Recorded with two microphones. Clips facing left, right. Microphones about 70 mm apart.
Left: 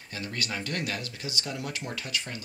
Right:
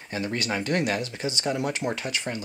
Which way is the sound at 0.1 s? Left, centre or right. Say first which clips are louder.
Right 6 dB; right.